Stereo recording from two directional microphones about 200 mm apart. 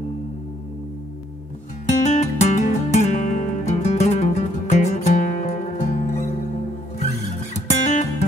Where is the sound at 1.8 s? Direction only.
35° left (ahead or behind).